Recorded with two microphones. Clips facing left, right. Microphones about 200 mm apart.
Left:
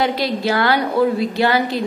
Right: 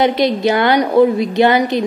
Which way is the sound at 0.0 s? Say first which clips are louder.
Right 6 dB; 20° right (ahead or behind).